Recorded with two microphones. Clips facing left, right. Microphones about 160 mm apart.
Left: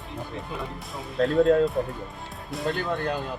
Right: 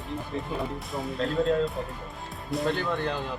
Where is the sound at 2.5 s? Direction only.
Centre (ahead or behind).